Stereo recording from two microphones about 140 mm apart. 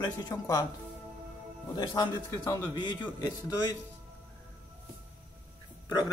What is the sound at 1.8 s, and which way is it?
Speech, 30° left (ahead or behind).